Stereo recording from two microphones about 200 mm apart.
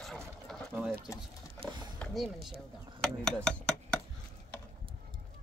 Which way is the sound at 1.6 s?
20° right (ahead or behind).